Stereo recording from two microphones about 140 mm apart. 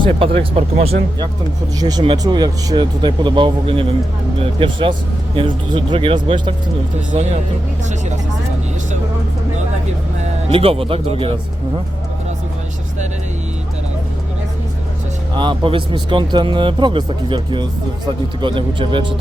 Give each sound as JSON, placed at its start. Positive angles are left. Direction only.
{"t": 0.2, "sound": "speech", "side_deg": -45}
{"t": 1.8, "sound": "speech", "side_deg": -30}
{"t": 10.5, "sound": "speech", "side_deg": -40}
{"t": 15.4, "sound": "speech", "side_deg": -35}